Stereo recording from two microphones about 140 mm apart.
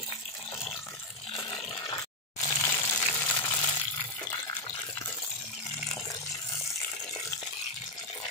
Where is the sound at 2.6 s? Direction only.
15° left (ahead or behind).